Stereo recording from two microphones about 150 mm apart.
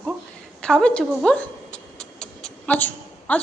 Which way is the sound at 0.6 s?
5° left (ahead or behind).